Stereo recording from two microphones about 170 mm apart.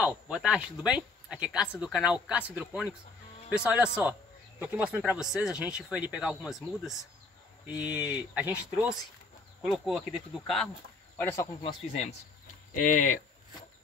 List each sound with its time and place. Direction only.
0.0 s speech: 5° right (ahead or behind); by 11.4 s 10° left (ahead or behind)
11.6 s speech: 40° left (ahead or behind)